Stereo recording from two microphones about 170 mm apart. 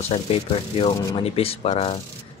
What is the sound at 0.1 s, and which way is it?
Speech, 35° left (ahead or behind).